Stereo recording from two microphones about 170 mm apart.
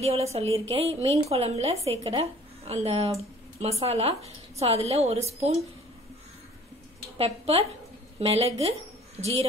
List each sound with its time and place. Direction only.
0.3 s a woman's voice: 35° right (ahead or behind)
7.2 s a woman's voice: 35° right (ahead or behind)